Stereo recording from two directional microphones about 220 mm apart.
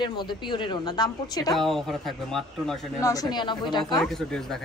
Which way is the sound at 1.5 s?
Centre (ahead or behind).